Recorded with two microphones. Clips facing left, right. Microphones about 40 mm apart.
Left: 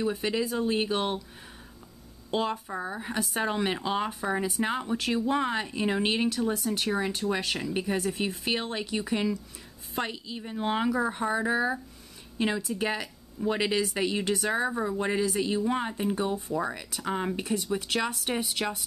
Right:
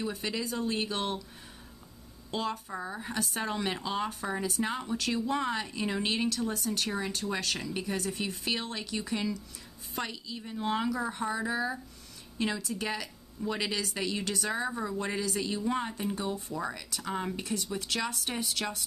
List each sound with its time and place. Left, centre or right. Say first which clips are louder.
0.0 s speech: left 6 dB; centre
2.3 s speech: left 4 dB; left